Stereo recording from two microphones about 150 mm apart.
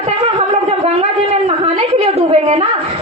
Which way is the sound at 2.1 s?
45° right (ahead or behind).